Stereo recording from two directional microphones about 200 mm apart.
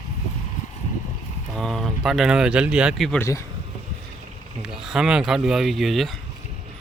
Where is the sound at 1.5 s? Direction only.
Centre (ahead or behind).